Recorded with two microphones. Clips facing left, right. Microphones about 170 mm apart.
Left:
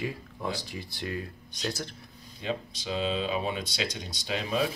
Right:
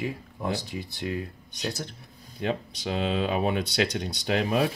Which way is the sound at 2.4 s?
60° right (ahead or behind).